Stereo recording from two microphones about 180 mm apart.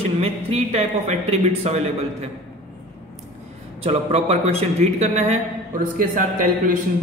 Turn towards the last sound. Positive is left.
turn(degrees=-45)  # may be behind; listen again after turning